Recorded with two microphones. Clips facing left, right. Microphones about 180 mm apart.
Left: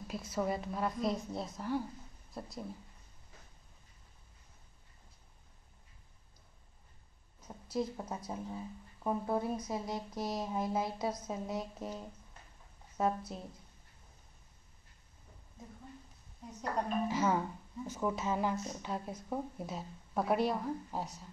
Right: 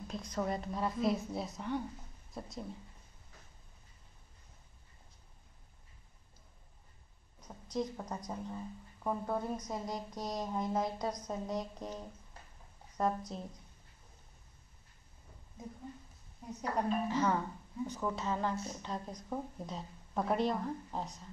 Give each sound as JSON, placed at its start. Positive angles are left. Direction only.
{"t": 0.1, "sound": "a woman's voice", "side_deg": 5}
{"t": 7.3, "sound": "a woman's voice", "side_deg": 5}
{"t": 17.1, "sound": "a woman's voice", "side_deg": 10}